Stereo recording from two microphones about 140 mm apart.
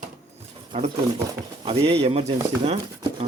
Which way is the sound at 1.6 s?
45° right (ahead or behind).